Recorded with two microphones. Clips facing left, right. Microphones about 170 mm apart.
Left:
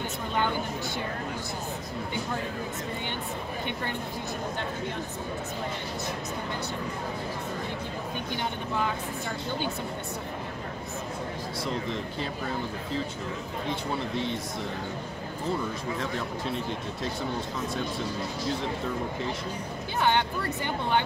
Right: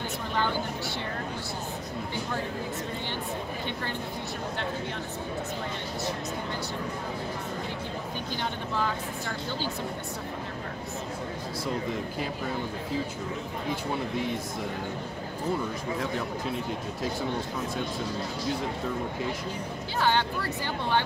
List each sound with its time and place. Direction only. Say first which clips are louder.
20.0 s speech: left 1 dB; 20° left (ahead or behind)